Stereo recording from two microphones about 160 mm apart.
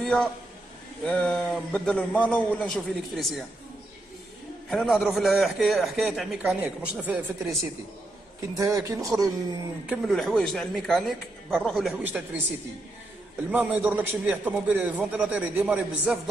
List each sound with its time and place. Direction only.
0.0 s a man's voice: 5° left (ahead or behind)
4.6 s a man's voice: centre (ahead or behind)
8.4 s speech: 20° right (ahead or behind)
9.8 s a man's voice: centre (ahead or behind)
13.5 s a man's voice: 10° right (ahead or behind)